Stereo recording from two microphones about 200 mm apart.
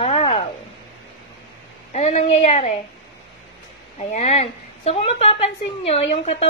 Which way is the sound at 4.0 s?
35° left (ahead or behind).